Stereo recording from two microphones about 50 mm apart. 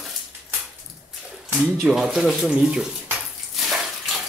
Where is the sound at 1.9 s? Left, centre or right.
Centre.